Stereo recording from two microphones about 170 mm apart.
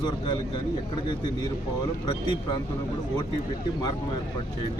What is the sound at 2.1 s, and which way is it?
Speech, 25° left (ahead or behind).